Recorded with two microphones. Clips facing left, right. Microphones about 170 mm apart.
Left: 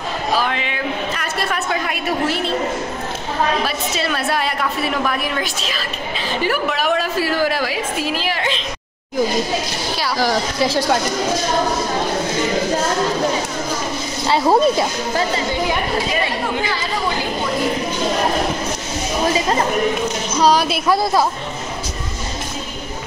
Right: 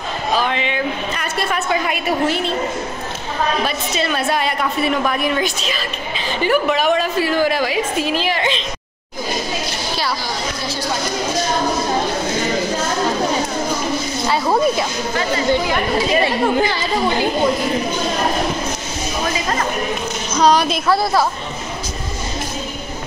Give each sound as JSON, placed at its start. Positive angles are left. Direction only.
{"t": 0.4, "sound": "a woman's voice", "side_deg": 5}
{"t": 3.6, "sound": "a woman's voice", "side_deg": 5}
{"t": 10.2, "sound": "a woman's voice", "side_deg": 90}
{"t": 14.3, "sound": "speech", "side_deg": 30}
{"t": 20.3, "sound": "a woman's voice", "side_deg": 5}
{"t": 20.9, "sound": "speech", "side_deg": 20}